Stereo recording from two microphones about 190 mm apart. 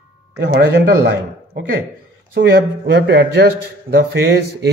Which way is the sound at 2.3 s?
60° right (ahead or behind).